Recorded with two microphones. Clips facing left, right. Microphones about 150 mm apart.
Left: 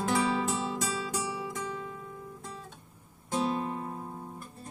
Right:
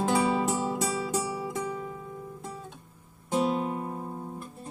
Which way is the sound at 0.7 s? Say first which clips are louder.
Right 4 dB; 25° right (ahead or behind).